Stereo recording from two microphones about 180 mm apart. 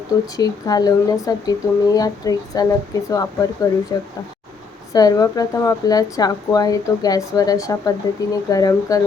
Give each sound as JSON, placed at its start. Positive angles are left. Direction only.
{"t": 0.3, "sound": "speech", "side_deg": 20}